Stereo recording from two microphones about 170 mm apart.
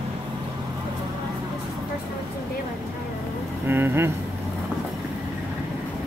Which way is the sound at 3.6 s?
15° right (ahead or behind).